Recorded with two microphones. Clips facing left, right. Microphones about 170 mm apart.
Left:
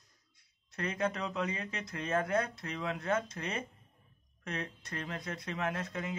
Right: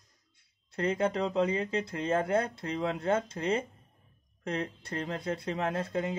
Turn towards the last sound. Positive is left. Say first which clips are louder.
# right 5 dB
turn(degrees=-30)  # may be behind; listen again after turning